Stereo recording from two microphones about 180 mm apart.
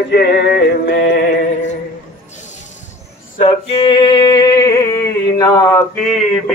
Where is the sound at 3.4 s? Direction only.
30° left (ahead or behind).